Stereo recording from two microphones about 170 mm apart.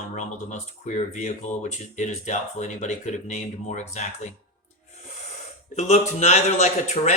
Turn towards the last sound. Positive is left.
turn(degrees=40)  # may be behind; listen again after turning